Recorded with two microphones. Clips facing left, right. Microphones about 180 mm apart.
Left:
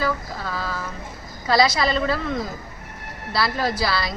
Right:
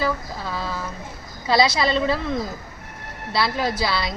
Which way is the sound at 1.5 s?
25° right (ahead or behind).